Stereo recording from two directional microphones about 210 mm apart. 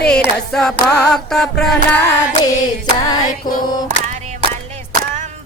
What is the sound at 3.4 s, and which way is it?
Mantra, 40° left (ahead or behind).